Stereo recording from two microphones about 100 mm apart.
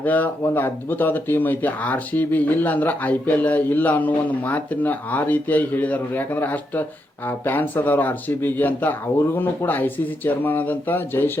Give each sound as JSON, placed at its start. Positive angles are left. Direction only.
{"t": 0.0, "sound": "speech", "side_deg": 15}